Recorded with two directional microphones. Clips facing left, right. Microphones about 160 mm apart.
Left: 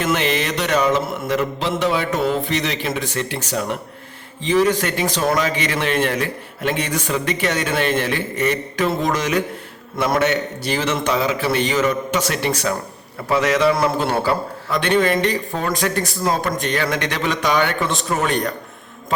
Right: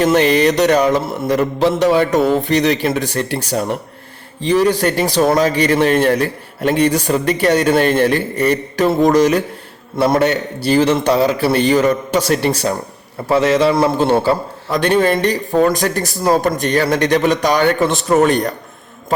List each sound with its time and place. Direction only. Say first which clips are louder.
0.0 s a man's voice: right 8 dB; 40° right (ahead or behind)
14.8 s a man's voice: right 3 dB; 40° right (ahead or behind)